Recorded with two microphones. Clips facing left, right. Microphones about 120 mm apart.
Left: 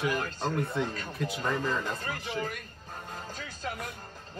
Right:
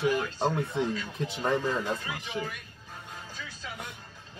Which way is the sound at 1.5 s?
45° left (ahead or behind).